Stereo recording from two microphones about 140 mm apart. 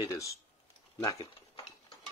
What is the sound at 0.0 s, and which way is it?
Speech, 25° left (ahead or behind).